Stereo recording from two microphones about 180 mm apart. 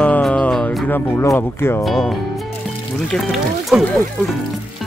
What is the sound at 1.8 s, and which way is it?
Speech, centre (ahead or behind).